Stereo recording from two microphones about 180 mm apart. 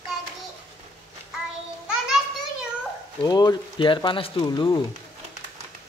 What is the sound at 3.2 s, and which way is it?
Speech, 20° left (ahead or behind).